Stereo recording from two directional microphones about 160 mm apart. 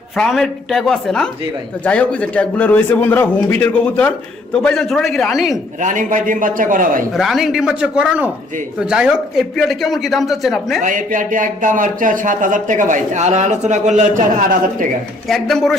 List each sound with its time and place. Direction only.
0.2 s a man's voice: centre (ahead or behind)
5.8 s a man's voice: 55° right (ahead or behind)
7.1 s speech: centre (ahead or behind)
10.8 s speech: 55° right (ahead or behind)
15.3 s speech: centre (ahead or behind)